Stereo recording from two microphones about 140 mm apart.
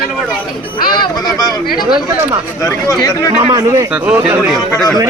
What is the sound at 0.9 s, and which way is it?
Speech, 30° left (ahead or behind).